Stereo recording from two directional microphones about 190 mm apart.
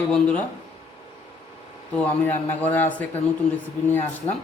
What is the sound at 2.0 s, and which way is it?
Speech, 10° left (ahead or behind).